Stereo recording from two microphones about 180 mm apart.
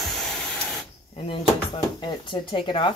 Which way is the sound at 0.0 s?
Centre (ahead or behind).